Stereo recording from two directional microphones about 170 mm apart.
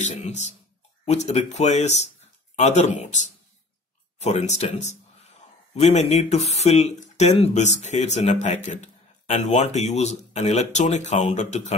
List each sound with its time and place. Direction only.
0.0 s speech: 45° left (ahead or behind)